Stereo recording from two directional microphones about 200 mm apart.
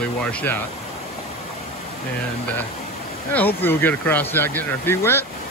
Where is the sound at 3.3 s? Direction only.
10° left (ahead or behind).